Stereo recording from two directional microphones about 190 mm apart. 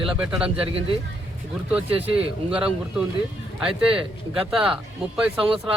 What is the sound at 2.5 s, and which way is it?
A man's voice, 5° right (ahead or behind).